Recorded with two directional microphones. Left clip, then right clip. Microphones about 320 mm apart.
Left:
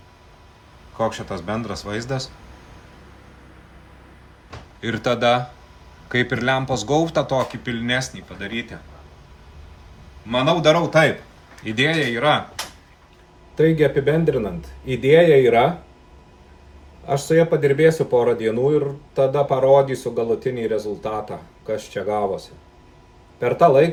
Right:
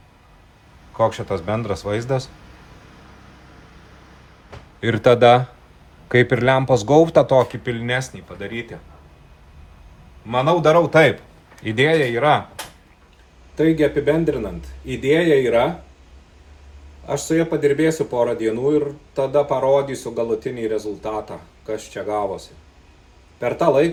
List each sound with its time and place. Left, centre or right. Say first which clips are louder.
0.9 s speech: right 4 dB; right
4.8 s speech: right 7 dB; centre
10.2 s speech: right 1 dB; centre
13.6 s speech: even; centre
17.1 s speech: left 3 dB; centre